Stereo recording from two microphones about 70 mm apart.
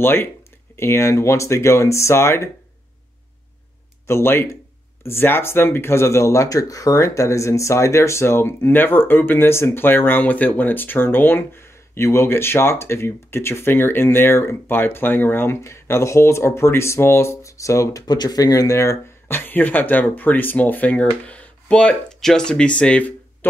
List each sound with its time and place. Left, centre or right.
0.0 s speech: left
4.1 s speech: left
18.0 s speech: left; by 23.1 s centre